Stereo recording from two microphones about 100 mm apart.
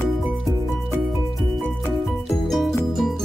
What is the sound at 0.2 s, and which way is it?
Music, centre (ahead or behind).